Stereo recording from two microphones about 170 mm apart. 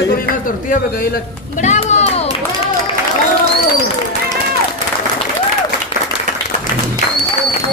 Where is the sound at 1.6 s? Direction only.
45° left (ahead or behind).